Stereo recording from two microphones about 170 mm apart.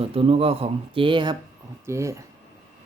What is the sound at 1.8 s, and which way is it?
Speech, 15° right (ahead or behind).